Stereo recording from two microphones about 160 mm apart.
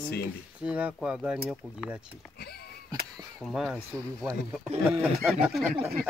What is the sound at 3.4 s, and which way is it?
Speech, centre (ahead or behind).